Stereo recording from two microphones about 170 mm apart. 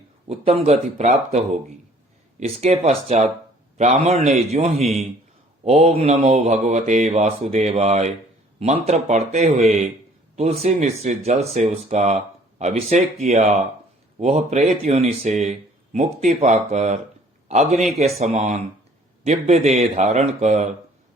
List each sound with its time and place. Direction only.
0.3 s speech: 35° right (ahead or behind)